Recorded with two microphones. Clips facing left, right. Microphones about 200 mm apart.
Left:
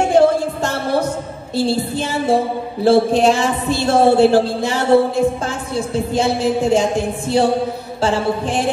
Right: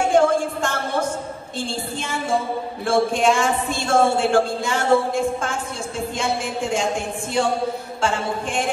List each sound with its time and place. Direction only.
0.1 s a woman's voice: 35° left (ahead or behind)